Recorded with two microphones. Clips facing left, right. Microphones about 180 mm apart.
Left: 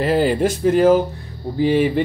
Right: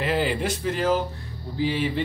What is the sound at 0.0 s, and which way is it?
Speech, 40° left (ahead or behind).